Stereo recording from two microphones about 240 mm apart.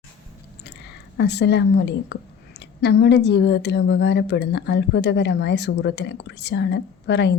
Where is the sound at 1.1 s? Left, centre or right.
Left.